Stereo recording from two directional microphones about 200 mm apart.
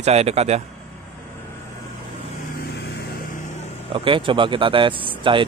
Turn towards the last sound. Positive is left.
turn(degrees=-25)  # may be behind; listen again after turning